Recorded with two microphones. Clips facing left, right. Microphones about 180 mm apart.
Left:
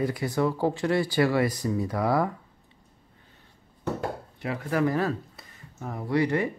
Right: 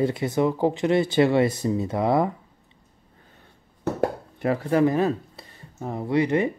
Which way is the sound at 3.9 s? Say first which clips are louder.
Right 7 dB; 50° right (ahead or behind).